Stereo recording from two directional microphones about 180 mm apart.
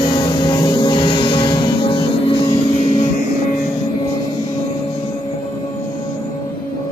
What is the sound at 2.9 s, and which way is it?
Music, 45° left (ahead or behind).